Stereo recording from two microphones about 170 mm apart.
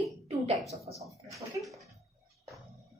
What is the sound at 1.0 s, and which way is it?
Speech, 20° right (ahead or behind).